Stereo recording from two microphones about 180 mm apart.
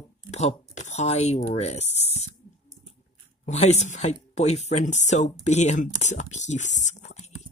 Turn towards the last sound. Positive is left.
turn(degrees=40)  # may be behind; listen again after turning